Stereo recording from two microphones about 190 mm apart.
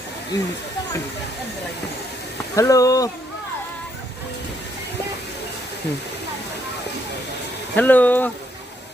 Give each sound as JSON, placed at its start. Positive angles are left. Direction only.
{"t": 2.6, "sound": "speech", "side_deg": 15}
{"t": 7.8, "sound": "speech", "side_deg": 10}